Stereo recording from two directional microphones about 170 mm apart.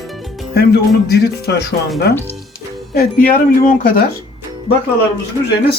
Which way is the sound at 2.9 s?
60° left (ahead or behind).